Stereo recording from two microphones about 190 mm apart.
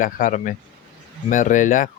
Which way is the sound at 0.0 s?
45° left (ahead or behind).